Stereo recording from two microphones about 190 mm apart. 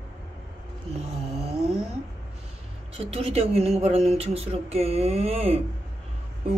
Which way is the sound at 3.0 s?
30° right (ahead or behind).